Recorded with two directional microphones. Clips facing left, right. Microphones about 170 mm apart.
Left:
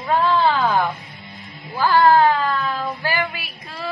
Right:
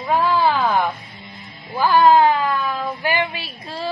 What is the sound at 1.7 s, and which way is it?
A woman's voice, 15° right (ahead or behind).